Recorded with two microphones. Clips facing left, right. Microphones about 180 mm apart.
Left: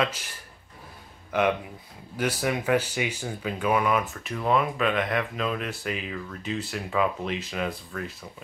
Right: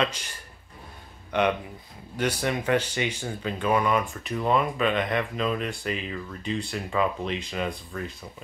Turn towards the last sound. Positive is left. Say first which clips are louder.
# even
turn(degrees=5)  # may be behind; listen again after turning